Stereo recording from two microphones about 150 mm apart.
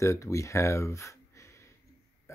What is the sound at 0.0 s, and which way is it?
Speech, 20° left (ahead or behind).